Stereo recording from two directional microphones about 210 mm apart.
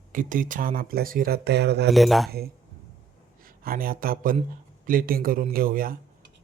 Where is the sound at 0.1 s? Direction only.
40° right (ahead or behind).